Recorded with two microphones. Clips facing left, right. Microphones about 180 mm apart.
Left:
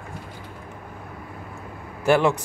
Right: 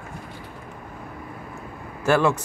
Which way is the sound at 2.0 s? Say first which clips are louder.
Left 1 dB; 15° left (ahead or behind).